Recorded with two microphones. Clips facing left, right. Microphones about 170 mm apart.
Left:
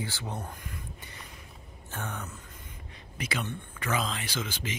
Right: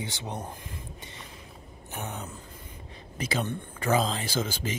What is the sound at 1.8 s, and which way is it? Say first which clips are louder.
Speech: right 1 dB; 15° right (ahead or behind).